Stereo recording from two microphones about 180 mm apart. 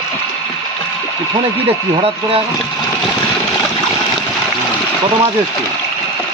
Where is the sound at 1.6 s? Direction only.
30° right (ahead or behind).